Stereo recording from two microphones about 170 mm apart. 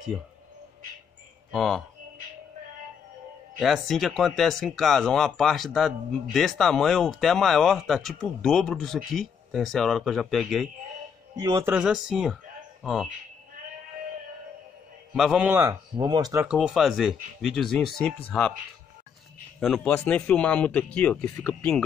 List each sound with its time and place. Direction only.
1.5 s speech: centre (ahead or behind)
3.5 s speech: centre (ahead or behind)
11.3 s speech: 20° right (ahead or behind)
11.7 s speech: 5° right (ahead or behind)
15.1 s a man's voice: 5° right (ahead or behind)
15.7 s speech: 25° right (ahead or behind)
16.4 s speech: 5° right (ahead or behind)
19.6 s speech: centre (ahead or behind)